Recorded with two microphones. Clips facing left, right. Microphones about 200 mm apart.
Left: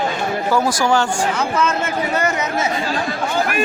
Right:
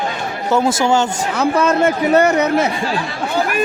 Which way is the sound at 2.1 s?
65° right (ahead or behind).